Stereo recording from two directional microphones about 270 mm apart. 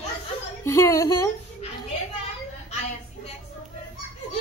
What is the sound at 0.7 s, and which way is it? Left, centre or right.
Speech, centre.